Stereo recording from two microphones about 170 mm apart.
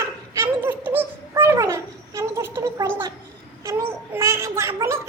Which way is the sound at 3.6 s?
20° right (ahead or behind).